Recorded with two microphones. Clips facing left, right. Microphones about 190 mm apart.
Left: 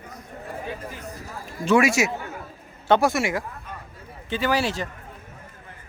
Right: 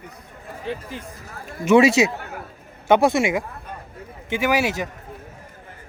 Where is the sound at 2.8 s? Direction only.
20° right (ahead or behind).